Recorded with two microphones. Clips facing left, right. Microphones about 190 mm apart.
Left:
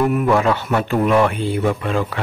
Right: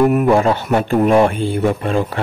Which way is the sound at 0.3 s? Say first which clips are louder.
Right 3 dB; 35° right (ahead or behind).